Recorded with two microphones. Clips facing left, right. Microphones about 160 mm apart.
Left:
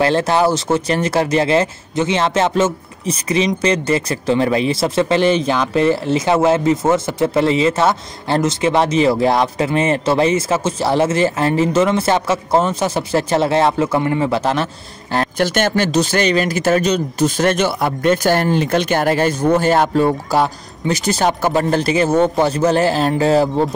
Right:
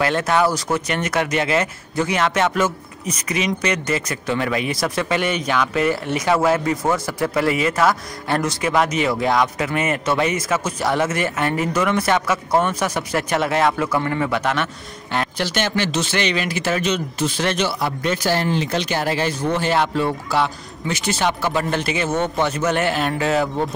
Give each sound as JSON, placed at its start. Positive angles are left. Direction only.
{"t": 0.0, "sound": "speech", "side_deg": 30}
{"t": 15.4, "sound": "speech", "side_deg": 50}